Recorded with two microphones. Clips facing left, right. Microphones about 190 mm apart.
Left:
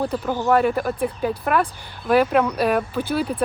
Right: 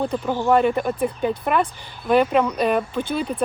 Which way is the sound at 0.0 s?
5° left (ahead or behind).